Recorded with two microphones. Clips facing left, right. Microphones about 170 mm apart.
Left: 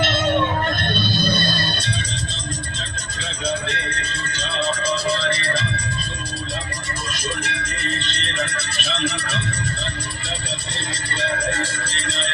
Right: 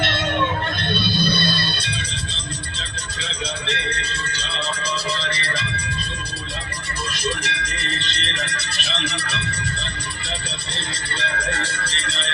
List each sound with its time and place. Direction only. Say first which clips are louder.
0.8 s music: even; 45° left (ahead or behind)
3.7 s music: right 1 dB; 50° left (ahead or behind)
7.1 s music: right 2 dB; 45° left (ahead or behind)
11.2 s music: left 3 dB; 40° left (ahead or behind)